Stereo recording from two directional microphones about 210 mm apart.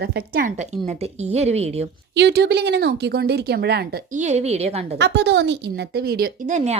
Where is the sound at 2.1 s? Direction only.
55° right (ahead or behind); by 4.9 s 30° right (ahead or behind).